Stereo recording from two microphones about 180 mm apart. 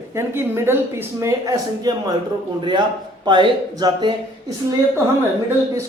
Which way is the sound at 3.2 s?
25° right (ahead or behind).